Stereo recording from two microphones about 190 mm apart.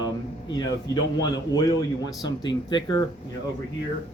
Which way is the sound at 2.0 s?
25° left (ahead or behind).